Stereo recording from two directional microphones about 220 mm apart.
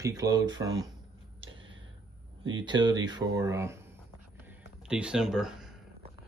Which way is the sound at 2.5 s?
20° right (ahead or behind).